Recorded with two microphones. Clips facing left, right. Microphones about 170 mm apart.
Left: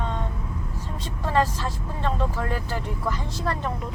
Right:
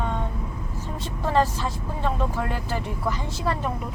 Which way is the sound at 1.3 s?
10° right (ahead or behind).